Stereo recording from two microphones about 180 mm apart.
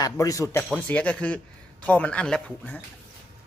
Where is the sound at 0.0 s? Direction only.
20° left (ahead or behind).